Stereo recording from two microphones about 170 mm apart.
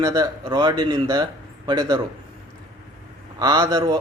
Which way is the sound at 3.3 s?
20° right (ahead or behind).